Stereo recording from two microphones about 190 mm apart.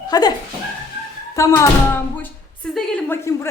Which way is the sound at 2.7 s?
10° left (ahead or behind).